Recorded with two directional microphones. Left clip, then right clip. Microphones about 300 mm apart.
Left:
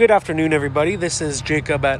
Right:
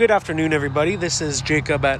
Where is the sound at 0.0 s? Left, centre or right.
Centre.